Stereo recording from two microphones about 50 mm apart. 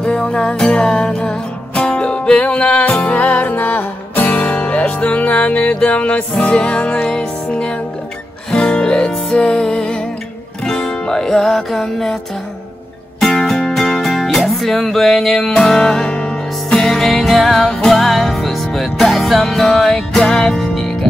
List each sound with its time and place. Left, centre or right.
0.0 s music: centre
13.2 s music: centre